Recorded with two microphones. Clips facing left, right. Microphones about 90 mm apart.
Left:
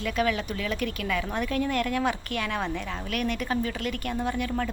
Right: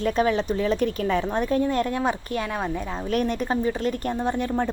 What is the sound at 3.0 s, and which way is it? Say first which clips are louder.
Speech: right 6 dB; 30° right (ahead or behind).